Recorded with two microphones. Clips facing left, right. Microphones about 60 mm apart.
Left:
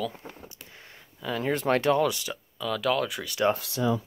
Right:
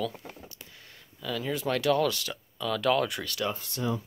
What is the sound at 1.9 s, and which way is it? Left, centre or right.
Speech, centre.